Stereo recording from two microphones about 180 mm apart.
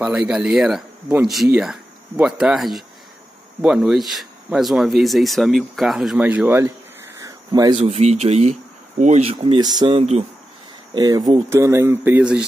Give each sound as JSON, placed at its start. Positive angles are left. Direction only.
{"t": 0.0, "sound": "speech", "side_deg": -5}
{"t": 7.2, "sound": "a sound", "side_deg": -20}
{"t": 7.7, "sound": "speech", "side_deg": -35}
{"t": 11.0, "sound": "speech", "side_deg": -20}